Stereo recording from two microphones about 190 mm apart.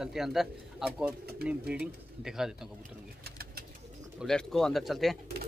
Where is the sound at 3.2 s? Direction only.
55° right (ahead or behind).